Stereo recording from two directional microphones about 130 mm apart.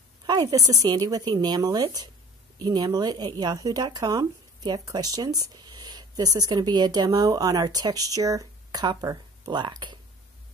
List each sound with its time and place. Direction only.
0.3 s speech: 30° right (ahead or behind)